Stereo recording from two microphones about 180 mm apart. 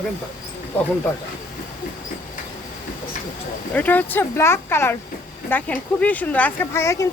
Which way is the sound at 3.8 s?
10° left (ahead or behind).